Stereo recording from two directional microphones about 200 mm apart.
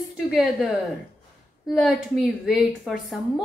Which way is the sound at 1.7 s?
Centre (ahead or behind).